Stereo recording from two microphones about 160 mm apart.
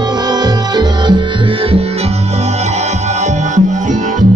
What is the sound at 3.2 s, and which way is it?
Music, 50° right (ahead or behind).